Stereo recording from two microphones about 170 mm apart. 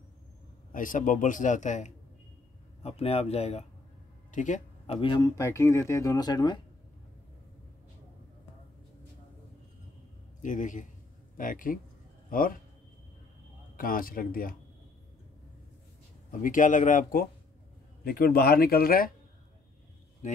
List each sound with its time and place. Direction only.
0.7 s a man's voice: 50° left (ahead or behind)
4.3 s a sound: 45° left (ahead or behind)
4.9 s speech: 30° left (ahead or behind)
10.4 s a man's voice: 50° left (ahead or behind)
13.7 s speech: 55° left (ahead or behind)
16.3 s a man's voice: 50° left (ahead or behind)
20.2 s a man's voice: 45° left (ahead or behind)